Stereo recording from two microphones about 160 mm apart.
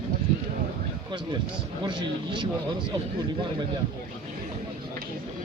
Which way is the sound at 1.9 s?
30° right (ahead or behind).